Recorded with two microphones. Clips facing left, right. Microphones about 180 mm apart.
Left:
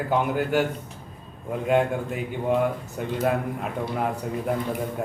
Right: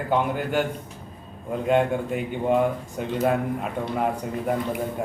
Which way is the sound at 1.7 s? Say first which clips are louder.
Right 1 dB; centre (ahead or behind).